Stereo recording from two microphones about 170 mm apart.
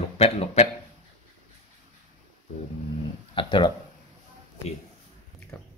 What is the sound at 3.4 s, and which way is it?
Speech, 30° left (ahead or behind).